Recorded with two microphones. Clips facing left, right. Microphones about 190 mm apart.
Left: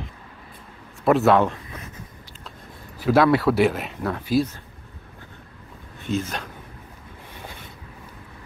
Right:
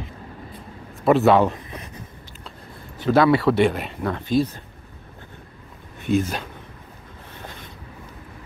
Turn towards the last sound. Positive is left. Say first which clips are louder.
# right 1 dB
turn(degrees=10)  # may be behind; listen again after turning